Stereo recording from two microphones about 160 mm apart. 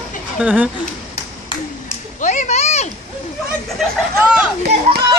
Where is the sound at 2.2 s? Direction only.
50° left (ahead or behind).